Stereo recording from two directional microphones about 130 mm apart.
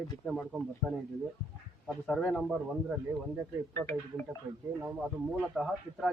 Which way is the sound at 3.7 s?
25° left (ahead or behind).